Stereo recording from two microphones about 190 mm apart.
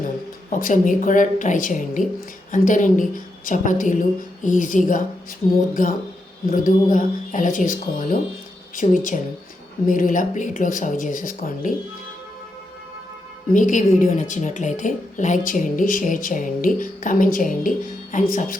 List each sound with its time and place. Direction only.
0.5 s speech: 45° left (ahead or behind)
13.5 s speech: 45° left (ahead or behind)